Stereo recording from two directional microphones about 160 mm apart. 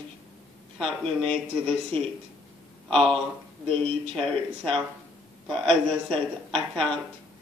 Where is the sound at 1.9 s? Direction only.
35° right (ahead or behind).